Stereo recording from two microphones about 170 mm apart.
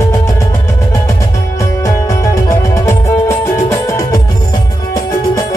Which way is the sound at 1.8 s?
20° left (ahead or behind).